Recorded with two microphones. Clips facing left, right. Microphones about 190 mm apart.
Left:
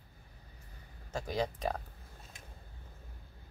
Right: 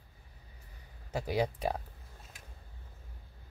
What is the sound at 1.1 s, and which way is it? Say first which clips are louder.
Speech: right 3 dB; 10° right (ahead or behind).